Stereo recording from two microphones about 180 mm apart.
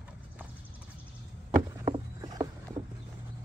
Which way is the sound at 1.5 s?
20° right (ahead or behind).